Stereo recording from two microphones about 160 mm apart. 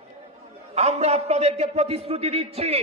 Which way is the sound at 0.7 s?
40° right (ahead or behind).